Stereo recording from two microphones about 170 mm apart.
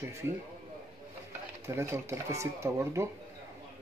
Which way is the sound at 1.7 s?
15° right (ahead or behind).